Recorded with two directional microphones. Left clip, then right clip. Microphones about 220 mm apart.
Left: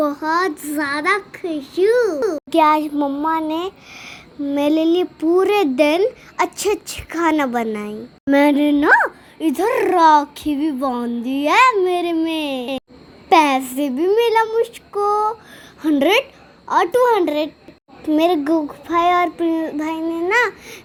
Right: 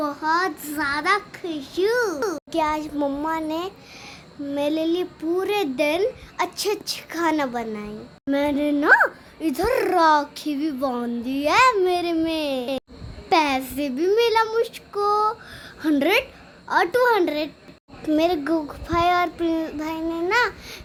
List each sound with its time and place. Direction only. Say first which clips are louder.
0.0 s a child's voice: left 4 dB; 15° left (ahead or behind)
3.0 s child singing: left 4 dB; centre (ahead or behind)
3.2 s a child's voice: left 6 dB; 20° left (ahead or behind)
14.4 s child singing: left 4 dB; centre (ahead or behind)
14.9 s a child's voice: left 3 dB; 10° left (ahead or behind)